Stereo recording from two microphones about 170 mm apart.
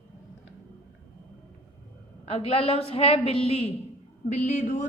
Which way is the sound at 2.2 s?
35° left (ahead or behind).